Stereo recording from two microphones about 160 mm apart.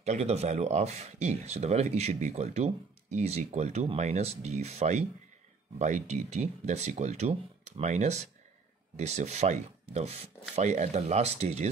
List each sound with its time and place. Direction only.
0.0 s speech: 45° right (ahead or behind)